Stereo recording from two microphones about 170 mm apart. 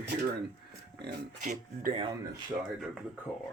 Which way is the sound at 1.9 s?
30° right (ahead or behind).